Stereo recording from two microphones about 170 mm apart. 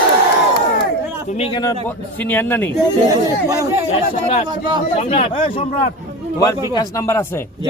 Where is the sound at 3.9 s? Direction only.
40° left (ahead or behind).